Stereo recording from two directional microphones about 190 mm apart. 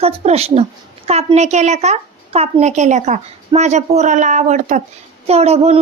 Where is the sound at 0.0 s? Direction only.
30° right (ahead or behind).